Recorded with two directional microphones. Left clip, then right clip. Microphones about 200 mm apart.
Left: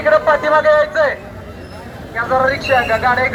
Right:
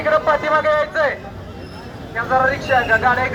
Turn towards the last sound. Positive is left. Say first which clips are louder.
# left 1 dB
turn(degrees=-5)  # may be behind; listen again after turning